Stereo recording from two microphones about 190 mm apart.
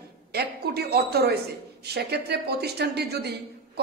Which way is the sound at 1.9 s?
60° right (ahead or behind).